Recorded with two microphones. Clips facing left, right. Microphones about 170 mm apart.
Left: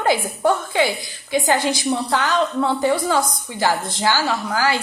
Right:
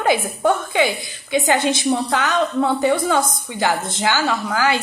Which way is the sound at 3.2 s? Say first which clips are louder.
Even; 20° right (ahead or behind).